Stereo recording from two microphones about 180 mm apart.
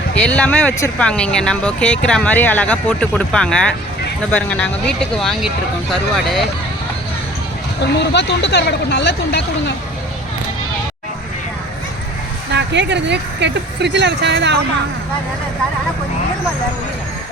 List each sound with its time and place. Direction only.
0.1 s speech: 5° left (ahead or behind)
7.9 s speech: 75° left (ahead or behind)
12.5 s speech: 75° right (ahead or behind)